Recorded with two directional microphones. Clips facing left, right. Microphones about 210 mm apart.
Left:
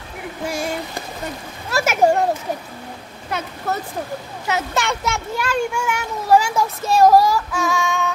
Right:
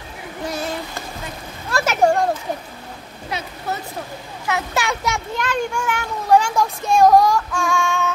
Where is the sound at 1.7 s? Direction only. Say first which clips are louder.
Left 1 dB; 10° left (ahead or behind).